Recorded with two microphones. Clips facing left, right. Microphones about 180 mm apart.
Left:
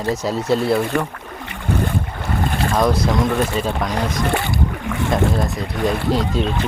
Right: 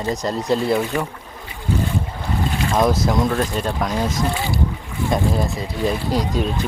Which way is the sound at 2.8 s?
Centre (ahead or behind).